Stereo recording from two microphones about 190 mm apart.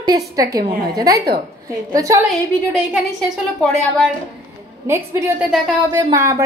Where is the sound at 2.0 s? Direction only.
15° right (ahead or behind).